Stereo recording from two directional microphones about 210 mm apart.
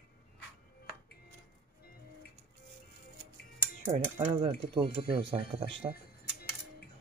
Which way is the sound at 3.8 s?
30° right (ahead or behind).